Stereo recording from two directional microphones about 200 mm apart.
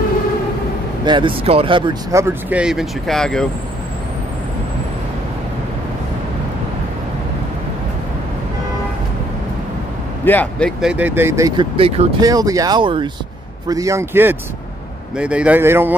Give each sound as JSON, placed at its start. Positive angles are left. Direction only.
{"t": 1.0, "sound": "speech", "side_deg": -25}
{"t": 2.2, "sound": "speech", "side_deg": -5}
{"t": 10.2, "sound": "speech", "side_deg": 10}
{"t": 10.8, "sound": "speech", "side_deg": -5}
{"t": 12.2, "sound": "speech", "side_deg": -20}